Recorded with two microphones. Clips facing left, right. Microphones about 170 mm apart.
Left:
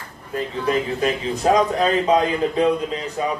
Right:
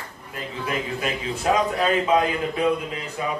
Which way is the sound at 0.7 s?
35° left (ahead or behind).